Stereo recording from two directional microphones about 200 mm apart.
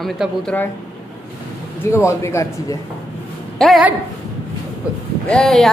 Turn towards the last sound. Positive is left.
turn(degrees=0)  # may be behind; listen again after turning